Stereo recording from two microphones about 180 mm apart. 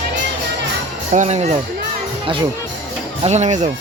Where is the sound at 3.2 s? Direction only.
40° right (ahead or behind).